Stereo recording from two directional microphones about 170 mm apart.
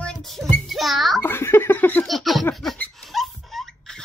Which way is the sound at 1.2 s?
15° left (ahead or behind).